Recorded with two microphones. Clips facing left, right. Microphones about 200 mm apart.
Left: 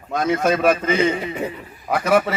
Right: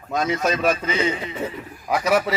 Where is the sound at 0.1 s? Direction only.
55° left (ahead or behind).